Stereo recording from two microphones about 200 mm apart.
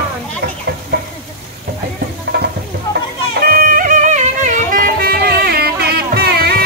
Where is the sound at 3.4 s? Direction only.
45° right (ahead or behind).